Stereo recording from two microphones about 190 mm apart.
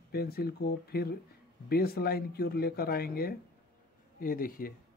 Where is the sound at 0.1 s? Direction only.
55° left (ahead or behind).